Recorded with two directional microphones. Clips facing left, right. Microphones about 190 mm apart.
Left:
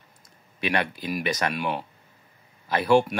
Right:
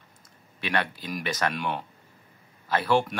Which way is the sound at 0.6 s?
15° left (ahead or behind).